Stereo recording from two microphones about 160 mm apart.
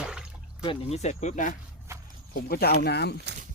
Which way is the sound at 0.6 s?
35° left (ahead or behind).